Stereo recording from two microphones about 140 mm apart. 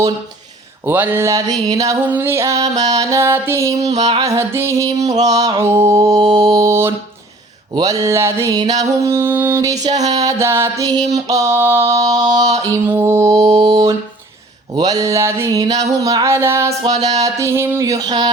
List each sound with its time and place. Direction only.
0.9 s a sound: 15° right (ahead or behind)
1.7 s music: 25° right (ahead or behind)
3.9 s music: 50° right (ahead or behind)
4.4 s music: 20° right (ahead or behind)
4.9 s music: 55° right (ahead or behind)
5.5 s music: 15° right (ahead or behind)
12.2 s music: 55° right (ahead or behind)
12.7 s music: 15° right (ahead or behind)